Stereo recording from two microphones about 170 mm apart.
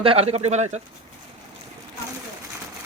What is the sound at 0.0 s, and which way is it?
Speech, 35° right (ahead or behind).